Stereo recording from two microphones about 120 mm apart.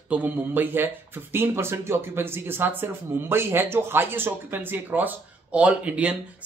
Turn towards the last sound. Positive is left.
turn(degrees=-10)  # may be behind; listen again after turning